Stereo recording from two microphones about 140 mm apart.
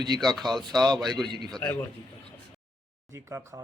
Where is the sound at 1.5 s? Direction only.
5° left (ahead or behind).